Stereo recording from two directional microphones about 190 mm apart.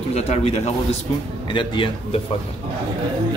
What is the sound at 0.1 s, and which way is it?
A man's voice, 35° left (ahead or behind).